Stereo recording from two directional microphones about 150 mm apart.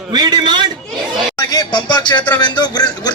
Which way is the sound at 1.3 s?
25° left (ahead or behind).